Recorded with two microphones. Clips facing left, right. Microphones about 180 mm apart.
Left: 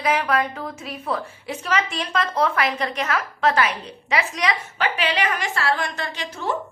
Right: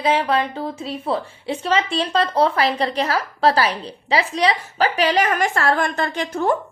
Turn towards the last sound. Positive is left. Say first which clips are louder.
# right 7 dB
turn(degrees=-50)  # may be behind; listen again after turning